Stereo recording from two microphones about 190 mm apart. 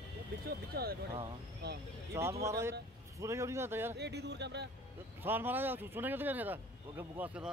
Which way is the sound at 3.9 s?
60° right (ahead or behind).